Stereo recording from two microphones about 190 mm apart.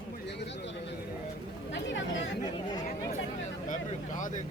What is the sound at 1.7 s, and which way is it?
Chatter, 80° left.